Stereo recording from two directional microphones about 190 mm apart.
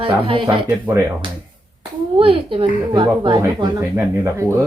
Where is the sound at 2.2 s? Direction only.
30° right (ahead or behind).